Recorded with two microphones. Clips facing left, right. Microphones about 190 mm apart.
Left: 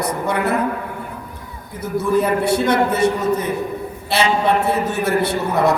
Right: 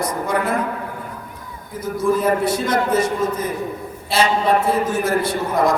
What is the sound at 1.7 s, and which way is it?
A man's voice, 65° left (ahead or behind).